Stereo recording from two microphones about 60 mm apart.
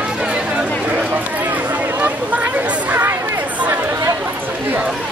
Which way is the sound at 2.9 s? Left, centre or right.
Right.